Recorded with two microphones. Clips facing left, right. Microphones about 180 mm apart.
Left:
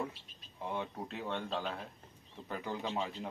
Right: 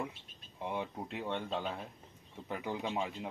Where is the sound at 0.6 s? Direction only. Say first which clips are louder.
Right 1 dB; 20° right (ahead or behind).